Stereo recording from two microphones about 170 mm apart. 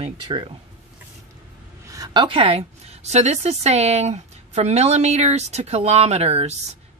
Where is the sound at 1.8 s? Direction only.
20° right (ahead or behind).